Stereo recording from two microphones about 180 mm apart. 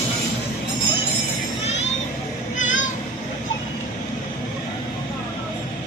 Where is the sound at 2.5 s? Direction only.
45° left (ahead or behind).